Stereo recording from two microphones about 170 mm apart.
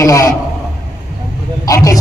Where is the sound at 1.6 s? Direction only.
20° left (ahead or behind).